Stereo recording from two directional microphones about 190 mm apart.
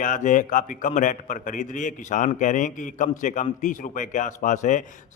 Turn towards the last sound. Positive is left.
turn(degrees=40)  # may be behind; listen again after turning